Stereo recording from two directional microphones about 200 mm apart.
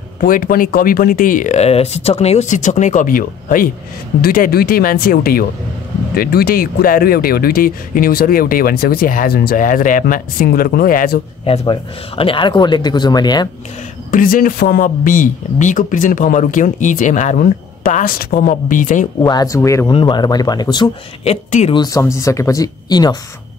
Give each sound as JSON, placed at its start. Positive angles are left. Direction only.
{"t": 0.2, "sound": "speech", "side_deg": 45}
{"t": 11.4, "sound": "speech", "side_deg": 25}
{"t": 14.1, "sound": "speech", "side_deg": 40}
{"t": 19.2, "sound": "speech", "side_deg": 20}
{"t": 21.2, "sound": "speech", "side_deg": 35}
{"t": 21.7, "sound": "speech", "side_deg": 15}